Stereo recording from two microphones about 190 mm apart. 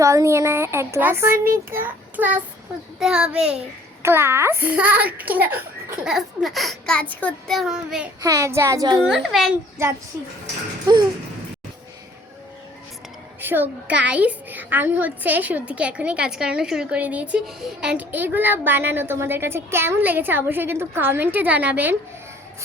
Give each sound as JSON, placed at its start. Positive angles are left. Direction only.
{"t": 0.0, "sound": "a woman's voice", "side_deg": -15}
{"t": 8.2, "sound": "a woman's voice", "side_deg": -15}
{"t": 9.0, "sound": "a child's voice", "side_deg": 0}
{"t": 9.8, "sound": "a woman's voice", "side_deg": -15}
{"t": 13.4, "sound": "a woman's voice", "side_deg": -10}